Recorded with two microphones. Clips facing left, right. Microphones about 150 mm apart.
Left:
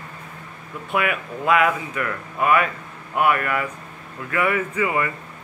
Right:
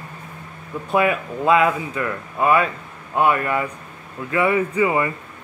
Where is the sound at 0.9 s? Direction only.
30° right (ahead or behind).